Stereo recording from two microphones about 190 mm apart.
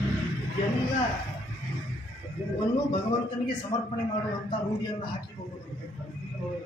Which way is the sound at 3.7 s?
25° left (ahead or behind).